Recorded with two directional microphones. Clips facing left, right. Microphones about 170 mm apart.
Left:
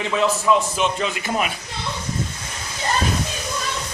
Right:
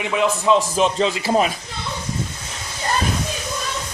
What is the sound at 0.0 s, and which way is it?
Speech, 15° right (ahead or behind).